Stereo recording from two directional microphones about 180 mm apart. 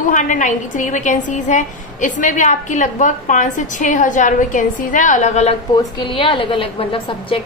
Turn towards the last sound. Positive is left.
turn(degrees=30)  # may be behind; listen again after turning